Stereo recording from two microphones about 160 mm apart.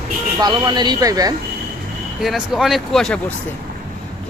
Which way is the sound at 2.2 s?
Centre (ahead or behind).